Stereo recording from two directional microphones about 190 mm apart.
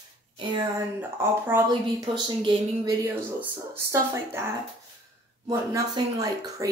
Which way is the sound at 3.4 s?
15° right (ahead or behind).